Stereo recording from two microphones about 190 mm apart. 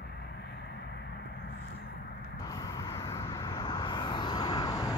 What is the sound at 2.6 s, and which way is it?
Vehicle, 15° left (ahead or behind).